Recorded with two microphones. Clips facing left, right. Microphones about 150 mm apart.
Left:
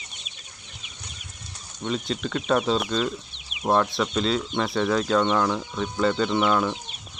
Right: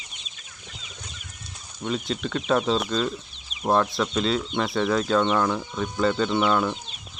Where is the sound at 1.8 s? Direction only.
Centre (ahead or behind).